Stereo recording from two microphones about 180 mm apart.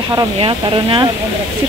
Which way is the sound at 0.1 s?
25° right (ahead or behind).